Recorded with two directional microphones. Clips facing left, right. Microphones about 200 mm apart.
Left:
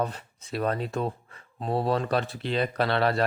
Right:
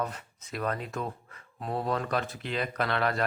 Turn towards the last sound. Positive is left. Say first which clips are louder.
# left 4 dB
turn(degrees=30)  # may be behind; listen again after turning